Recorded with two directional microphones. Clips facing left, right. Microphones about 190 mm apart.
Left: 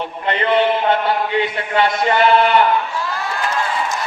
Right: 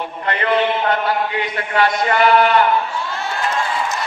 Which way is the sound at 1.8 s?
25° left (ahead or behind).